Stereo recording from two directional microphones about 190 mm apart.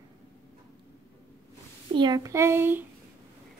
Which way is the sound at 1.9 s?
20° right (ahead or behind).